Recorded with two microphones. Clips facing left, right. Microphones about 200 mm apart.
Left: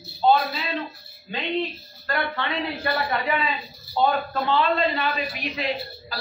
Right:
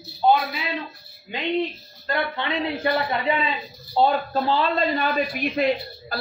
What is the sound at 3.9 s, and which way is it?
A man's voice, 35° right (ahead or behind).